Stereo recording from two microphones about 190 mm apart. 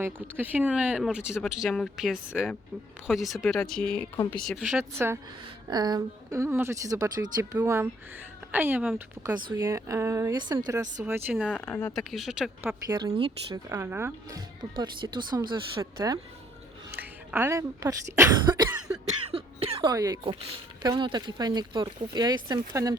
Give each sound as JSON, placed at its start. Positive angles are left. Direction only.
{"t": 0.0, "sound": "speech", "side_deg": -10}
{"t": 4.9, "sound": "a woman's voice", "side_deg": -15}
{"t": 11.4, "sound": "speech", "side_deg": 5}
{"t": 11.9, "sound": "speech", "side_deg": 0}
{"t": 12.9, "sound": "speech", "side_deg": -20}
{"t": 19.3, "sound": "cough", "side_deg": -30}
{"t": 20.8, "sound": "speech", "side_deg": -20}